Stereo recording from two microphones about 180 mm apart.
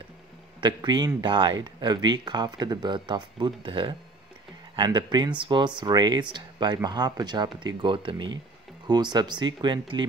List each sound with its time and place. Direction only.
0.6 s speech: 25° right (ahead or behind)